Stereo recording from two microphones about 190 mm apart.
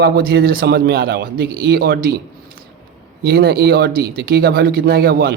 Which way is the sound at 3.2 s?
55° right (ahead or behind).